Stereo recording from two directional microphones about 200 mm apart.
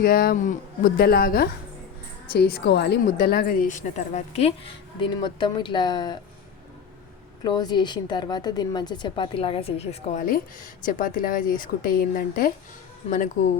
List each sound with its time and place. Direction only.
0.0 s speech: 45° left (ahead or behind)
3.8 s a woman's voice: 35° left (ahead or behind)
7.4 s a woman's voice: 20° left (ahead or behind)
10.8 s a woman's voice: 45° left (ahead or behind)